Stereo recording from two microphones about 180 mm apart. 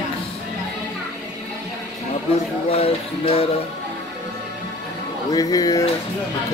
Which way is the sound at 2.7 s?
35° left (ahead or behind).